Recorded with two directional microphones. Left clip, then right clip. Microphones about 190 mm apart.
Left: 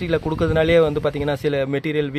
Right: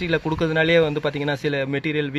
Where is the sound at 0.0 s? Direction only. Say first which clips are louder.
Left 1 dB; 5° left (ahead or behind).